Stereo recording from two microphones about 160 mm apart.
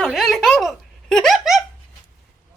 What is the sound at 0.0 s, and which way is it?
Giggle, centre (ahead or behind).